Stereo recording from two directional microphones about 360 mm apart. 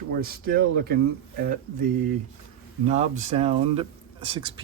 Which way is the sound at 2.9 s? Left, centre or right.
Centre.